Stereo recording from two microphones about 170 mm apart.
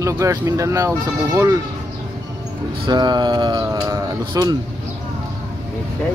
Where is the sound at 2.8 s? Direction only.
25° right (ahead or behind).